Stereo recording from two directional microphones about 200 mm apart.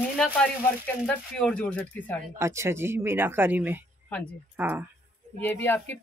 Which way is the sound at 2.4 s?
15° right (ahead or behind).